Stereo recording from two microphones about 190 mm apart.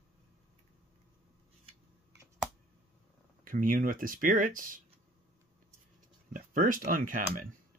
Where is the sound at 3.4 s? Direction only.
45° right (ahead or behind).